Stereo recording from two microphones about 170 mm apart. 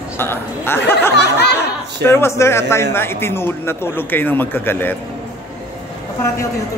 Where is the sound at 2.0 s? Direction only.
15° left (ahead or behind).